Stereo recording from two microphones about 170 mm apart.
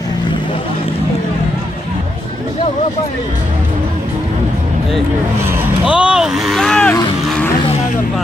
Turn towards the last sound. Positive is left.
turn(degrees=5)  # may be behind; listen again after turning